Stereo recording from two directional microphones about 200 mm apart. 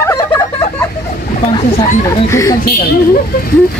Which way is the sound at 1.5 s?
20° left (ahead or behind).